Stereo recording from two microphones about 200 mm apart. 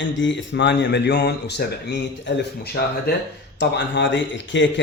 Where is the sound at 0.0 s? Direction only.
65° left (ahead or behind).